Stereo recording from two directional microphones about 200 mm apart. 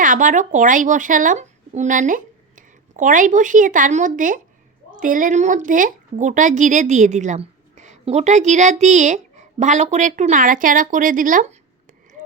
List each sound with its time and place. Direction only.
0.0 s speech: 40° right (ahead or behind)